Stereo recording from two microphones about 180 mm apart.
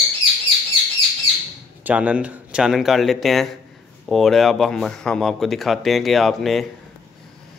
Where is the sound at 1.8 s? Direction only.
5° right (ahead or behind).